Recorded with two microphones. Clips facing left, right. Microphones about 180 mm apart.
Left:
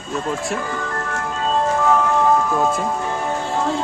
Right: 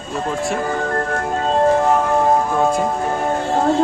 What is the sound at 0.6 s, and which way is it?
Music, 45° right (ahead or behind).